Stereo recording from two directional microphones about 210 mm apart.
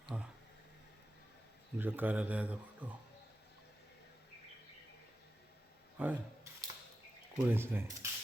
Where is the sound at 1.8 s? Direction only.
10° right (ahead or behind).